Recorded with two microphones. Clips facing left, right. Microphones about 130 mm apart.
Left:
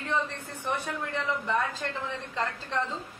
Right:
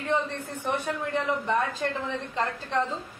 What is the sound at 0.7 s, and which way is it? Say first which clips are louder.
A woman's voice: right 4 dB; 20° right (ahead or behind).